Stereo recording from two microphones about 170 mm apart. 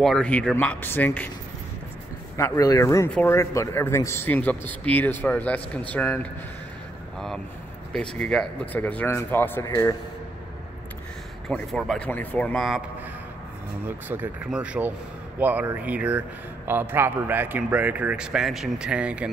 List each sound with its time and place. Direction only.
0.0 s speech: 5° left (ahead or behind)
2.3 s speech: 15° left (ahead or behind)
7.9 s speech: 5° left (ahead or behind)
11.4 s a man's voice: 5° left (ahead or behind)
13.8 s speech: 10° right (ahead or behind)